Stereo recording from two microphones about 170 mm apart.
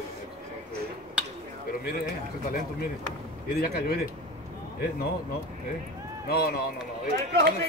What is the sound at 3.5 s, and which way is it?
Speech, 65° left (ahead or behind).